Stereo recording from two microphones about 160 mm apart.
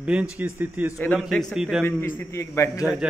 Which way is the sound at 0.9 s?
10° left (ahead or behind).